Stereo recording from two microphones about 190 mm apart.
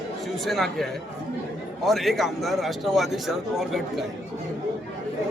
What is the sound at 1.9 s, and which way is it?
A man's voice, centre (ahead or behind).